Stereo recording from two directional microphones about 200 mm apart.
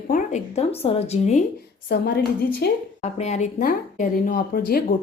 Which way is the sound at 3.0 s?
35° left (ahead or behind).